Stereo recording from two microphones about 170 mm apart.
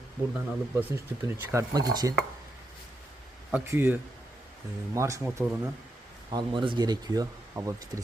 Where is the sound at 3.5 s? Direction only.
10° right (ahead or behind).